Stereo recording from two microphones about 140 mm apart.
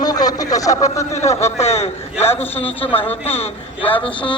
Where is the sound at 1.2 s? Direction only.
50° left (ahead or behind).